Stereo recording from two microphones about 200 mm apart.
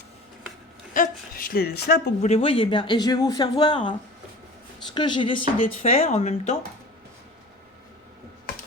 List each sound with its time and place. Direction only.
0.9 s speech: 45° left (ahead or behind)
2.2 s speech: 30° left (ahead or behind)
4.9 s speech: 25° left (ahead or behind)